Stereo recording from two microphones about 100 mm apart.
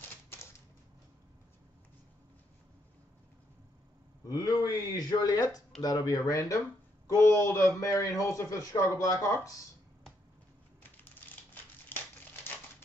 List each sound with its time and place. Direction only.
4.3 s a man's voice: 35° left (ahead or behind)
10.8 s crushing: 20° left (ahead or behind)